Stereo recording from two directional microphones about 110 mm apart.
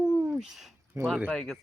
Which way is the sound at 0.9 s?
25° right (ahead or behind).